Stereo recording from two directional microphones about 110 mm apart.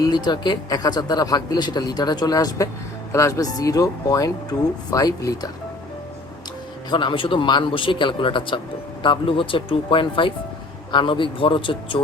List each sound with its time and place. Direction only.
0.0 s speech: 40° left (ahead or behind)
6.9 s a man's voice: 50° left (ahead or behind)